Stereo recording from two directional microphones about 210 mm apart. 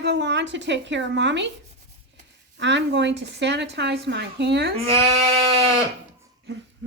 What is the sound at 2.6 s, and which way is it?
Speech, 60° right (ahead or behind).